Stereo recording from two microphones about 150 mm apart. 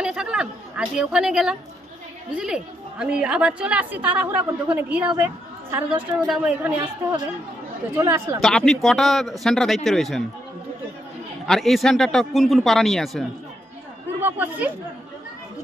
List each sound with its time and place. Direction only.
0.0 s a woman's voice: 5° right (ahead or behind); by 8.4 s 20° right (ahead or behind)
8.4 s a man's voice: centre (ahead or behind)
11.4 s a man's voice: centre (ahead or behind)
14.2 s a woman's voice: 10° right (ahead or behind)